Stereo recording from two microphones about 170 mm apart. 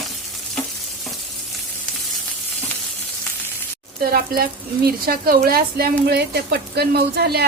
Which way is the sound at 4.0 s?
65° right (ahead or behind).